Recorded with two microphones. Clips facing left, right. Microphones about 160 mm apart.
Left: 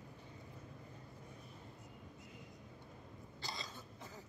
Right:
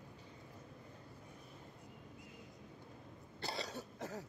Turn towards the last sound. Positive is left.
turn(degrees=-75)  # may be behind; listen again after turning